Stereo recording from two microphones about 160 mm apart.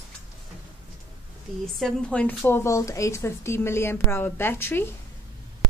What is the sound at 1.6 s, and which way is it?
A woman's voice, 5° left (ahead or behind).